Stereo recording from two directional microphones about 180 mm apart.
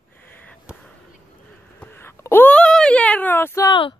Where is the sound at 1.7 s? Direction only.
15° left (ahead or behind).